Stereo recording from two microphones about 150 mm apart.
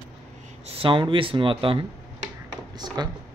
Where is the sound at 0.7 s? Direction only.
35° right (ahead or behind).